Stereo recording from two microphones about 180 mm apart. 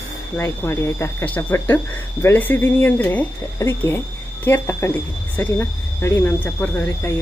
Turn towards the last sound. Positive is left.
turn(degrees=10)  # may be behind; listen again after turning